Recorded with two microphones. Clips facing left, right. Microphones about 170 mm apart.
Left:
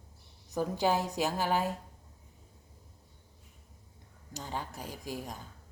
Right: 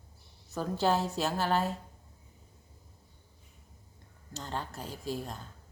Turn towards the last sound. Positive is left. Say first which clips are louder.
# right 3 dB
turn(degrees=10)  # may be behind; listen again after turning